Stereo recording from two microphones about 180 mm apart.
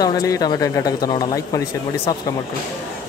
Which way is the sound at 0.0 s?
20° left (ahead or behind).